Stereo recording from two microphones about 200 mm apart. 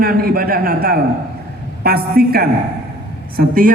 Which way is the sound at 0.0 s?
50° right (ahead or behind).